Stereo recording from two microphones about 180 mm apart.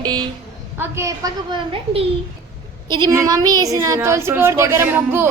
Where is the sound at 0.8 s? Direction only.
15° right (ahead or behind).